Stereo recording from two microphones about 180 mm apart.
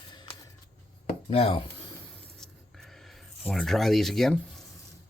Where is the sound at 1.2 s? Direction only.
35° left (ahead or behind).